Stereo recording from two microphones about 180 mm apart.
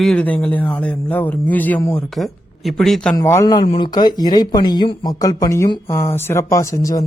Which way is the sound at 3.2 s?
15° left (ahead or behind).